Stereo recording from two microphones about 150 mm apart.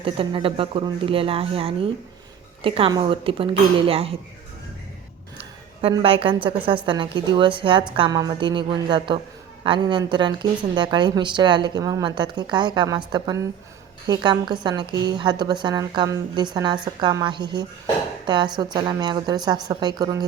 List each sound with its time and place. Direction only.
0.0 s a woman's voice: 35° right (ahead or behind)
6.0 s a woman's voice: 40° right (ahead or behind)